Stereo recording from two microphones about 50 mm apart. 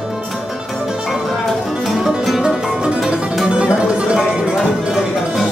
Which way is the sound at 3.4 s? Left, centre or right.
Centre.